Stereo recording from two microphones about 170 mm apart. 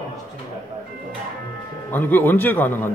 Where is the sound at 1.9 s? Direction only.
10° left (ahead or behind).